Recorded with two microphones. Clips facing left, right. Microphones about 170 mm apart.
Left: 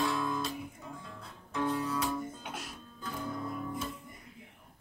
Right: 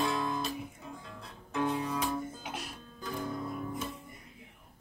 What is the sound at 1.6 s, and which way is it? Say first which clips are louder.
Music: even; 15° right (ahead or behind).